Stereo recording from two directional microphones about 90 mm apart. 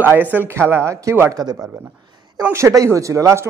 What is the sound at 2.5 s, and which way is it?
Speech, 30° right (ahead or behind).